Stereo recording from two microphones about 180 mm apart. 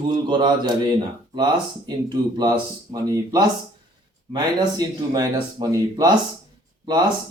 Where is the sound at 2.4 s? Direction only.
20° right (ahead or behind).